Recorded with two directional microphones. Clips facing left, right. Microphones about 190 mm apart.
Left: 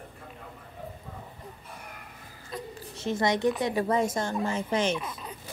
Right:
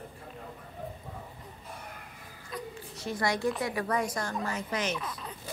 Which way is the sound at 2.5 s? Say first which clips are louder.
Left 1 dB; 25° left (ahead or behind).